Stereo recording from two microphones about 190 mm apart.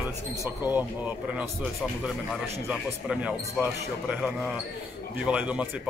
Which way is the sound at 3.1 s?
5° right (ahead or behind).